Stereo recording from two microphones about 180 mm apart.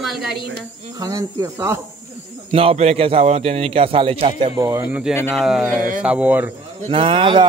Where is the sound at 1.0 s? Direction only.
20° right (ahead or behind).